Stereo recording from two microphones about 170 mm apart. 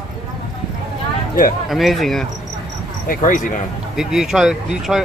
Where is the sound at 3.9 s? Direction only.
5° right (ahead or behind).